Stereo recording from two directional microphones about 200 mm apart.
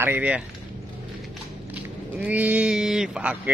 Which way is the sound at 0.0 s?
10° right (ahead or behind).